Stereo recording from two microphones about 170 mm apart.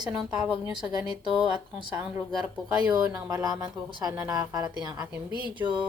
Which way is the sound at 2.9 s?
20° right (ahead or behind).